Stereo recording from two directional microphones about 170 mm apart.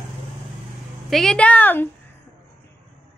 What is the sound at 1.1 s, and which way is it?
Speech, 5° left (ahead or behind).